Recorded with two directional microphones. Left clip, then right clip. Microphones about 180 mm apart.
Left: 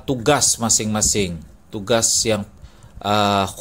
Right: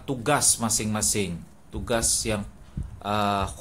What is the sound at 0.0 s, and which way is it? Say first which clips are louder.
A man's voice: left 7 dB; 25° left (ahead or behind).